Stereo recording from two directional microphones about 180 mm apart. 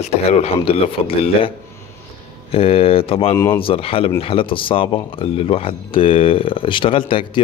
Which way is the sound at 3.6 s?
30° left (ahead or behind).